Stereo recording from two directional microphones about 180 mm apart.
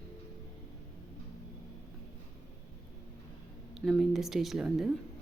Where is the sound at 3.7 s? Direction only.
Centre (ahead or behind).